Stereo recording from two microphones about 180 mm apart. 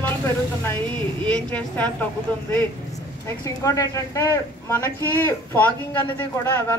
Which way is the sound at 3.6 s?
20° left (ahead or behind).